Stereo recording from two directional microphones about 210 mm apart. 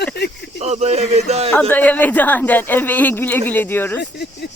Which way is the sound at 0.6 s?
30° right (ahead or behind).